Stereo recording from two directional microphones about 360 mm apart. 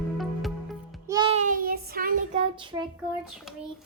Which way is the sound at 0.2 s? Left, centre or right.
Centre.